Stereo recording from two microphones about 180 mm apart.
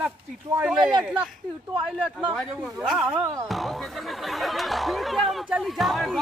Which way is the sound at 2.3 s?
Centre (ahead or behind).